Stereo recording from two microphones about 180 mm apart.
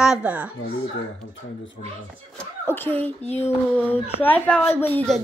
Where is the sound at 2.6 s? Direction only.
10° left (ahead or behind).